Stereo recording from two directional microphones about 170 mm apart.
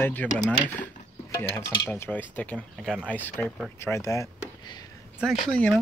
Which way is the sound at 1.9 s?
10° left (ahead or behind).